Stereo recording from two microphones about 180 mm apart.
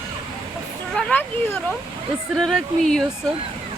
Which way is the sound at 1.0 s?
5° left (ahead or behind).